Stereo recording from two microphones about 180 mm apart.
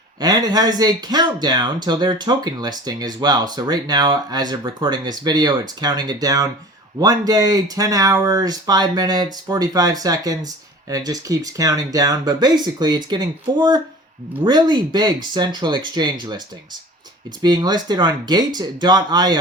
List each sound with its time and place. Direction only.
0.2 s speech: 20° right (ahead or behind)
17.4 s speech: 20° right (ahead or behind)